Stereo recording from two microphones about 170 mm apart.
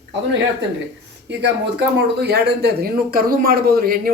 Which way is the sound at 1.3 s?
90° right.